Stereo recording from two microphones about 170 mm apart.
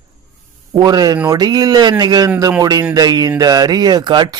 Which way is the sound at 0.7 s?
25° right (ahead or behind).